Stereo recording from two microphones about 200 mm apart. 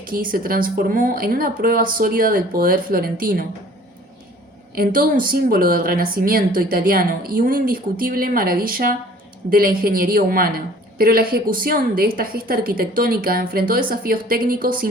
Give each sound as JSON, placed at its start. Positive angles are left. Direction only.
{"t": 0.1, "sound": "a woman's voice", "side_deg": -45}
{"t": 4.7, "sound": "a woman's voice", "side_deg": -50}